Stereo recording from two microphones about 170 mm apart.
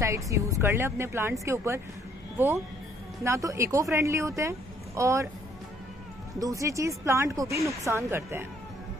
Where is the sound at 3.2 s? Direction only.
15° right (ahead or behind).